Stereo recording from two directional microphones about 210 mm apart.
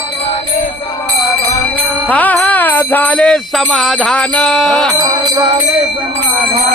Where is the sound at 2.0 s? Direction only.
5° left (ahead or behind).